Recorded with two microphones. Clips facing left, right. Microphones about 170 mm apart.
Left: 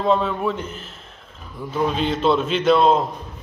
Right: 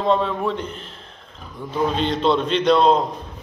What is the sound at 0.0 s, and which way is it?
A man's voice, 5° left (ahead or behind).